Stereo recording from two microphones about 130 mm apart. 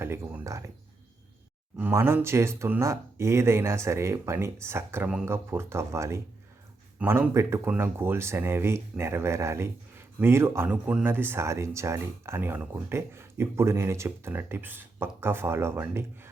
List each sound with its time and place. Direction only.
0.0 s speech: 15° right (ahead or behind)
1.8 s speech: 20° right (ahead or behind)